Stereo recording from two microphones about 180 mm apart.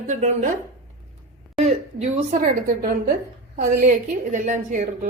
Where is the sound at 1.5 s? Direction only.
40° right (ahead or behind).